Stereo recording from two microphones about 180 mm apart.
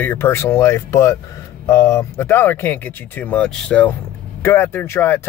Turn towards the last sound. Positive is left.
turn(degrees=15)  # may be behind; listen again after turning